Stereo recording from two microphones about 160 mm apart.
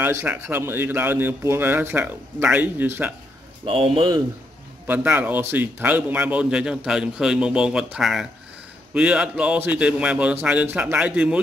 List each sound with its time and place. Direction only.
0.0 s speech: 15° right (ahead or behind)
3.6 s speech: 35° right (ahead or behind)
4.8 s speech: 10° right (ahead or behind)